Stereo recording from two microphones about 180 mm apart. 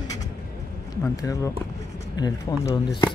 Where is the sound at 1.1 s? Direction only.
20° left (ahead or behind).